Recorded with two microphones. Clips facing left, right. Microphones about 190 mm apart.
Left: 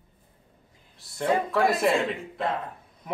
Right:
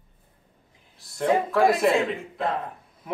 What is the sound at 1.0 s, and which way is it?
Speech, centre (ahead or behind).